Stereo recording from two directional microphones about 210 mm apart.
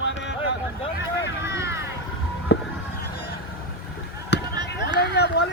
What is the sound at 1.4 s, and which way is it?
Vehicle, 15° right (ahead or behind).